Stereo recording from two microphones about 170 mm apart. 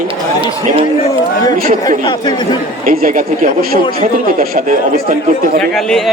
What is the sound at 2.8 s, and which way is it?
Speech, 55° right (ahead or behind).